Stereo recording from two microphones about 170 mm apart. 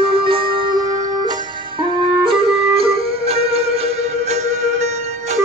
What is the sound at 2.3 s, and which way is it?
Flute, 35° right (ahead or behind).